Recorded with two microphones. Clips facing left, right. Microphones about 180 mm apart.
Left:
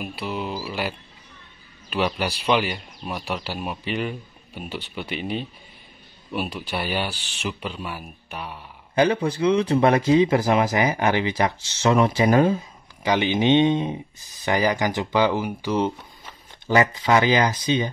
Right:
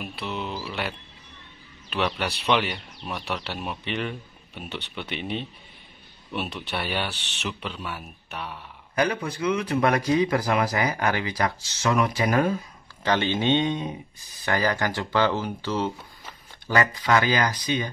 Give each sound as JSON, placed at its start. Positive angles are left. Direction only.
{"t": 0.0, "sound": "speech", "side_deg": 0}
{"t": 8.9, "sound": "speech", "side_deg": 25}
{"t": 13.0, "sound": "speech", "side_deg": 15}